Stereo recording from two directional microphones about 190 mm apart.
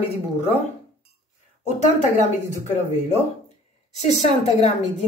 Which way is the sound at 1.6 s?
40° left (ahead or behind).